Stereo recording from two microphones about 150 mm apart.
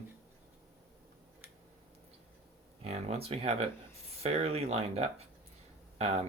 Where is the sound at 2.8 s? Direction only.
45° right (ahead or behind).